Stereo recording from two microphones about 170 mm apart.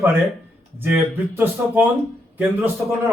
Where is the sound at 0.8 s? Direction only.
10° right (ahead or behind).